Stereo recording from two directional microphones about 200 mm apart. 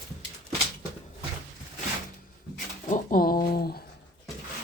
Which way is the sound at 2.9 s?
45° left (ahead or behind).